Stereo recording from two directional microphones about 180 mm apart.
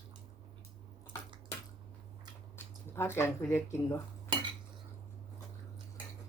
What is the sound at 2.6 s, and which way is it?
Speech, 15° left (ahead or behind).